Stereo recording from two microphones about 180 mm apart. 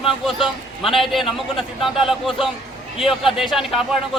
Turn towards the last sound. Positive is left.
turn(degrees=0)  # may be behind; listen again after turning